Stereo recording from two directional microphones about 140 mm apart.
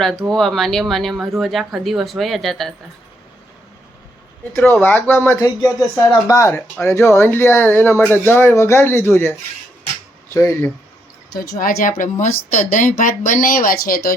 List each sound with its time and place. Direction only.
0.0 s speech: centre (ahead or behind)
4.5 s speech: 15° left (ahead or behind)
6.5 s speech: 15° left (ahead or behind)
10.3 s speech: 20° left (ahead or behind)
11.6 s speech: 75° left (ahead or behind)